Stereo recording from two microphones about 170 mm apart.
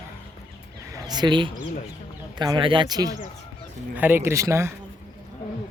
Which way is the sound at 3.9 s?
10° right (ahead or behind).